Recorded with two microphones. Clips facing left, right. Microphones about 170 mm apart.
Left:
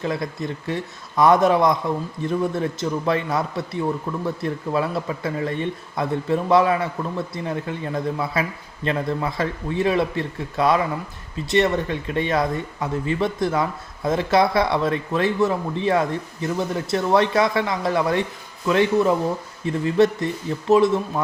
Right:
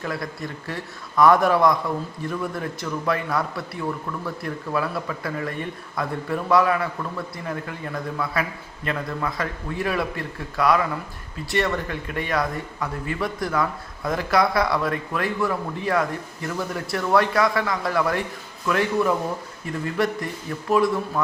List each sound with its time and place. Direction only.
0.0 s speech: 20° left (ahead or behind)